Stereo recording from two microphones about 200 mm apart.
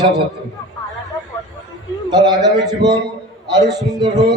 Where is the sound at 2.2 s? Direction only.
20° right (ahead or behind).